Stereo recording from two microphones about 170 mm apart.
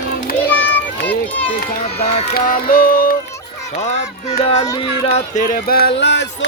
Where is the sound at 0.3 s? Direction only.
60° left (ahead or behind).